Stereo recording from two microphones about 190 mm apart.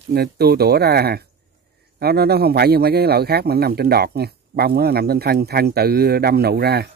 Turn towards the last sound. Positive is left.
turn(degrees=-55)  # may be behind; listen again after turning